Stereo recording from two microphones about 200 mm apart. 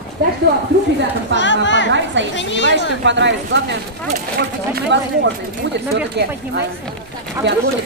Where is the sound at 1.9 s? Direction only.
65° right (ahead or behind).